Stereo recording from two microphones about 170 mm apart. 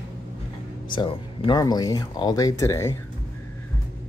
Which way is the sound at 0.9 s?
30° left (ahead or behind).